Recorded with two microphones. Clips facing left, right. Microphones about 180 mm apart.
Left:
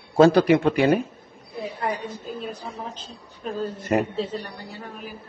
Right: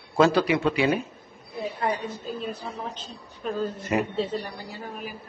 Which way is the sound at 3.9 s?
45° left (ahead or behind).